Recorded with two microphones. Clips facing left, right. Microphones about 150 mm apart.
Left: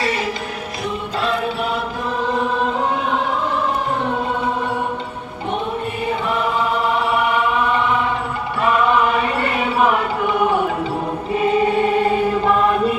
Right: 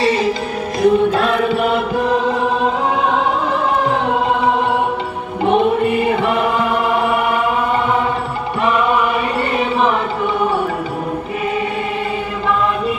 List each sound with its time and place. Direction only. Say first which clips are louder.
0.0 s music: right 6 dB; 25° right (ahead or behind)
0.8 s choir: right 12 dB; 55° right (ahead or behind)
5.5 s choir: right 9 dB; 75° right (ahead or behind); by 7.4 s 55° right (ahead or behind)
9.4 s chant: right 3 dB; 5° left (ahead or behind)